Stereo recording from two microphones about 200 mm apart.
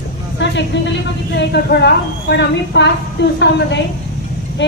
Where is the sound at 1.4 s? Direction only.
55° left (ahead or behind).